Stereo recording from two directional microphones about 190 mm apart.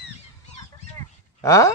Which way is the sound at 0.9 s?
15° left (ahead or behind).